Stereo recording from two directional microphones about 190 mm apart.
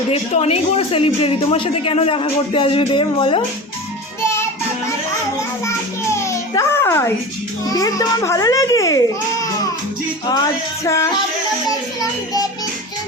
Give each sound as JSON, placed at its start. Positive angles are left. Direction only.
{"t": 0.1, "sound": "a woman's voice", "side_deg": 35}
{"t": 4.2, "sound": "music", "side_deg": 15}
{"t": 6.1, "sound": "babbling", "side_deg": 15}
{"t": 7.7, "sound": "a woman's voice", "side_deg": 20}
{"t": 10.8, "sound": "music", "side_deg": 15}